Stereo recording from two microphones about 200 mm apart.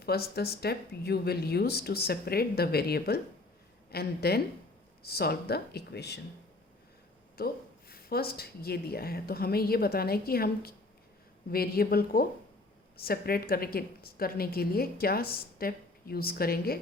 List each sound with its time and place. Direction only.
0.0 s a woman's voice: 50° left (ahead or behind)
7.3 s a woman's voice: 50° left (ahead or behind)